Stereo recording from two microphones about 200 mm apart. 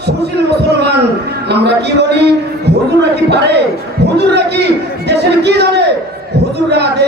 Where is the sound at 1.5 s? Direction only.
55° right (ahead or behind).